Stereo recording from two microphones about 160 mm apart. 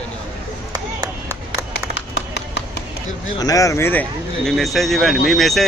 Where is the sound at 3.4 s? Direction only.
20° left (ahead or behind).